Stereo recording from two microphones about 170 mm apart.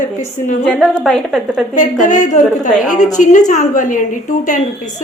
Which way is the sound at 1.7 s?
45° left (ahead or behind).